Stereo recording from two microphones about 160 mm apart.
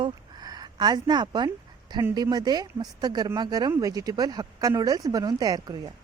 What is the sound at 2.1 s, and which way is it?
Speech, 25° right (ahead or behind).